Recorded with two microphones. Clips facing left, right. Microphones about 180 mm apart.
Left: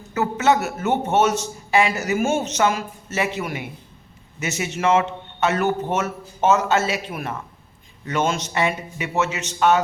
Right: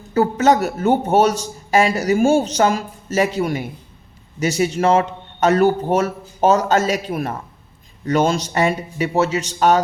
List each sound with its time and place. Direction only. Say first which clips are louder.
0.1 s a man's voice: right 4 dB; 35° right (ahead or behind)